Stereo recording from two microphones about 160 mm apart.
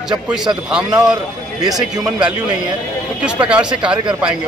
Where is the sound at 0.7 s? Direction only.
5° right (ahead or behind).